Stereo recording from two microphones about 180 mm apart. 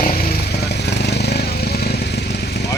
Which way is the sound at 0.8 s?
65° left (ahead or behind).